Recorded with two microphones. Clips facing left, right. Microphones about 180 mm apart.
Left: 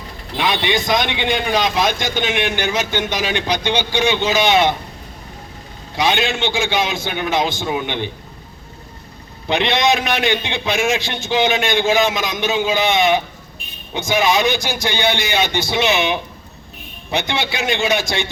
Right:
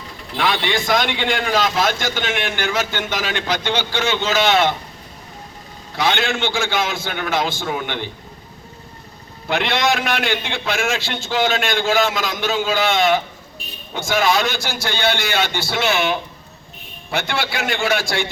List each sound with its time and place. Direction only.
0.3 s a man's voice: 20° left (ahead or behind)
6.0 s a man's voice: 15° left (ahead or behind)
9.5 s a man's voice: 20° left (ahead or behind)